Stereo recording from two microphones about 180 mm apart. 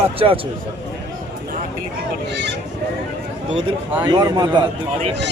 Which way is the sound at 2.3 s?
75° right (ahead or behind).